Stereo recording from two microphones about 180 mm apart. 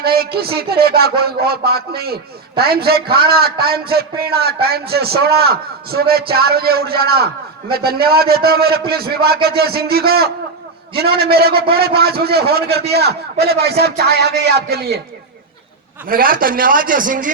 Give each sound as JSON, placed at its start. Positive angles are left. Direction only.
{"t": 0.0, "sound": "speech", "side_deg": -60}
{"t": 16.0, "sound": "speech", "side_deg": -50}